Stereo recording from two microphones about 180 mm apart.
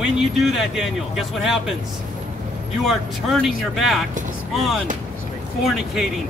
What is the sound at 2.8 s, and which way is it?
Speech, centre (ahead or behind).